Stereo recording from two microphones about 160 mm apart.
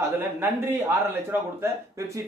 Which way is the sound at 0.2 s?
15° right (ahead or behind).